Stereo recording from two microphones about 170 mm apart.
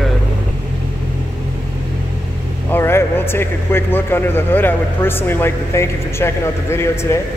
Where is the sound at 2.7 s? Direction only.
15° left (ahead or behind).